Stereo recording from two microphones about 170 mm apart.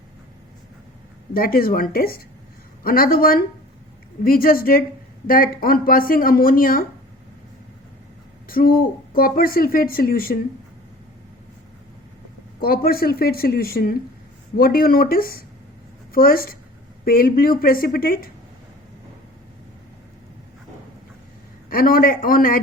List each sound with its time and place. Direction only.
1.3 s speech: 60° left (ahead or behind)
8.4 s speech: 60° left (ahead or behind)
12.5 s speech: 60° left (ahead or behind)
21.7 s speech: 60° left (ahead or behind)